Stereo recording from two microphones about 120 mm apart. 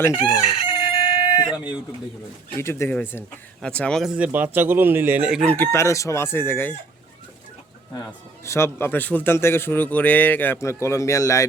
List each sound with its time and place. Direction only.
0.6 s fowl: 50° left (ahead or behind)
2.6 s a man's voice: 20° left (ahead or behind)
3.6 s speech: 10° left (ahead or behind)
4.2 s speech: 15° right (ahead or behind)
5.5 s a man's voice: 20° left (ahead or behind)
8.4 s a man's voice: 20° left (ahead or behind)